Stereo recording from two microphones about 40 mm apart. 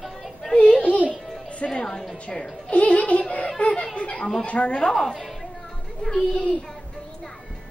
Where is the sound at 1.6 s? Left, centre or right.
Left.